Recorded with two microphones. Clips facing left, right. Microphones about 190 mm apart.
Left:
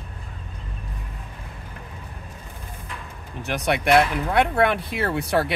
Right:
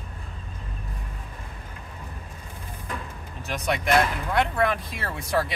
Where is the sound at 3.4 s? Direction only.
65° left (ahead or behind).